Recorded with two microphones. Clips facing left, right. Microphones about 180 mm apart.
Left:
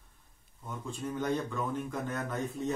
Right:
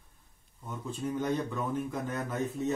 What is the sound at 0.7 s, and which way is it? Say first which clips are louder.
A man's voice: right 3 dB; 5° right (ahead or behind).